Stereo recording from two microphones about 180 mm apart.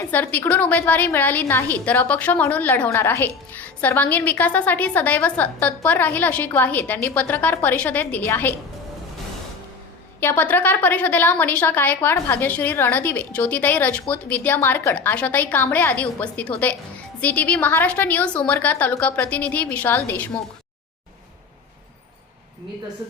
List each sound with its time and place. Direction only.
0.1 s a woman's voice: 10° left (ahead or behind)
10.2 s a woman's voice: 10° left (ahead or behind)